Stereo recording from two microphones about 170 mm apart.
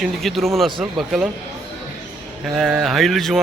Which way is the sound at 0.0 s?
Centre (ahead or behind).